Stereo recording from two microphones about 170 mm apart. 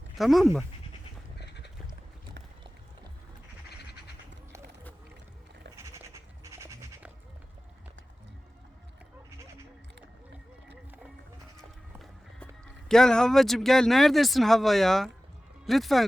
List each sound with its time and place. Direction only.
0.2 s speech: centre (ahead or behind)
1.4 s duck: 80° left
5.7 s goat: 15° right (ahead or behind)
11.9 s music: centre (ahead or behind)
12.9 s speech: 5° left (ahead or behind)